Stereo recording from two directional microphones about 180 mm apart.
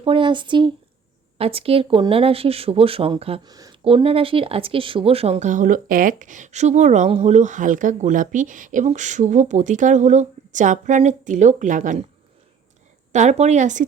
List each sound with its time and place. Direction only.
0.0 s speech: 30° right (ahead or behind); by 12.0 s 45° right (ahead or behind)
13.1 s speech: 40° right (ahead or behind)